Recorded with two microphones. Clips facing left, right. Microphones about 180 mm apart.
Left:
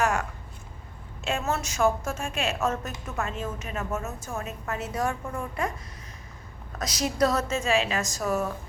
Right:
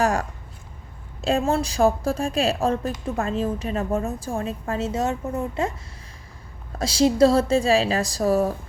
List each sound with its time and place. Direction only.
0.0 s a woman's voice: 35° right (ahead or behind)
6.7 s a woman's voice: 30° right (ahead or behind)